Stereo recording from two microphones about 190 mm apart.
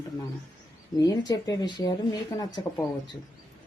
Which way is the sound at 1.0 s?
20° left (ahead or behind).